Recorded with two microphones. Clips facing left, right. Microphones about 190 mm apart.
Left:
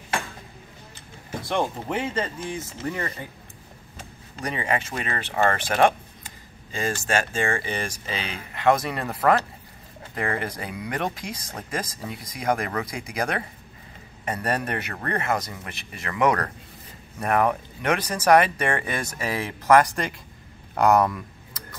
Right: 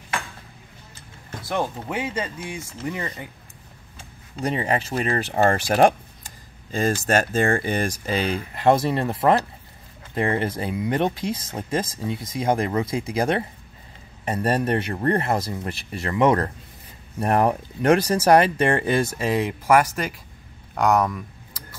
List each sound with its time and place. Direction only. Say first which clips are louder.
1.5 s speech: even; 5° right (ahead or behind)
4.4 s speech: right 3 dB; 30° right (ahead or behind)
17.3 s speech: right 2 dB; 35° right (ahead or behind)
19.6 s speech: left 3 dB; 10° right (ahead or behind)